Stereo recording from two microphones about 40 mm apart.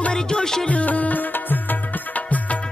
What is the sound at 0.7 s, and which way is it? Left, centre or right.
Music, left.